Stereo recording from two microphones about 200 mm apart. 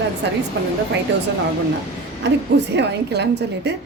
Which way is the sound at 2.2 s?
60° right (ahead or behind).